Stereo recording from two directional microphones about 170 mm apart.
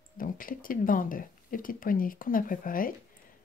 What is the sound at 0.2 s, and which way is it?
Speech, 55° left (ahead or behind).